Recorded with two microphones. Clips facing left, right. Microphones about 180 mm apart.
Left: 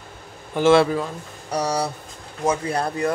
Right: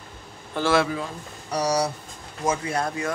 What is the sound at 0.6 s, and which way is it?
Speech, 20° left (ahead or behind).